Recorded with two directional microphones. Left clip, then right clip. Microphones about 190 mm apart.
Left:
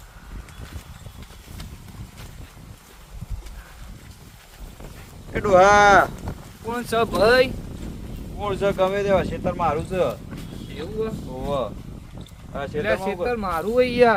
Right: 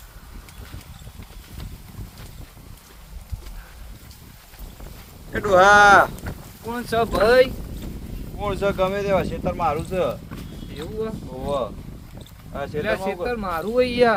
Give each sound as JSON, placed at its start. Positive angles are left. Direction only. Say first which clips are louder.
{"t": 5.3, "sound": "speech", "louder": "right 1 dB", "side_deg": -30}
{"t": 6.7, "sound": "speech", "louder": "even", "side_deg": 15}
{"t": 8.4, "sound": "speech", "louder": "left 1 dB", "side_deg": -15}
{"t": 11.0, "sound": "speech", "louder": "left 1 dB", "side_deg": 20}
{"t": 11.4, "sound": "speech", "louder": "right 1 dB", "side_deg": -5}
{"t": 13.2, "sound": "speech", "louder": "left 1 dB", "side_deg": 10}